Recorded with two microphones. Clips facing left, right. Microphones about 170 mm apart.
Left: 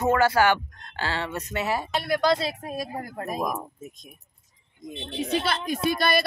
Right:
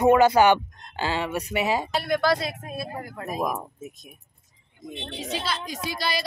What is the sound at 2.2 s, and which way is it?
Speech, 25° left (ahead or behind).